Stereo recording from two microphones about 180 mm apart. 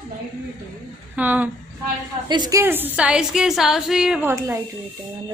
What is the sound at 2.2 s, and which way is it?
A woman's voice, 25° right (ahead or behind).